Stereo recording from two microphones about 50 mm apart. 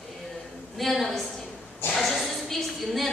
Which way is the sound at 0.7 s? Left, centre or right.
Centre.